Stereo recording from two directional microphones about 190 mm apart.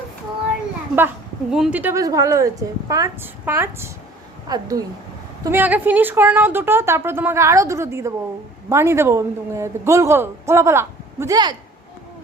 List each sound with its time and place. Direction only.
0.9 s a woman's voice: 5° right (ahead or behind)